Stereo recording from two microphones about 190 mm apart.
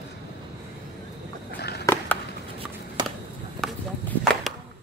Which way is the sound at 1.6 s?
60° left (ahead or behind).